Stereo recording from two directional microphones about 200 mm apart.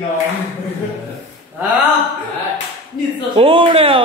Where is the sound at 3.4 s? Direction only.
25° right (ahead or behind).